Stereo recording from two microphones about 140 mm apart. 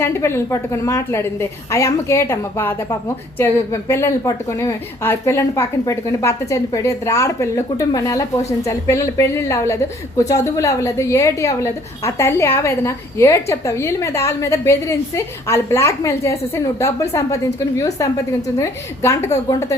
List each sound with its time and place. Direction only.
0.0 s a woman's voice: 20° left (ahead or behind)